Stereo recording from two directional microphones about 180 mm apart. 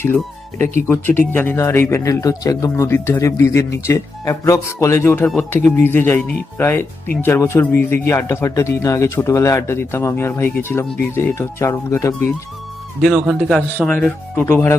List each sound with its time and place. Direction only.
0.9 s speech: 10° left (ahead or behind)
13.0 s speech: centre (ahead or behind)